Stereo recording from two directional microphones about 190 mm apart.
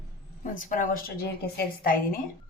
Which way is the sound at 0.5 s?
45° left (ahead or behind).